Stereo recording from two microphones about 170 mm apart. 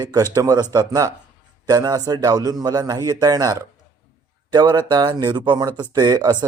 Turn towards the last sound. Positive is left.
turn(degrees=-25)  # may be behind; listen again after turning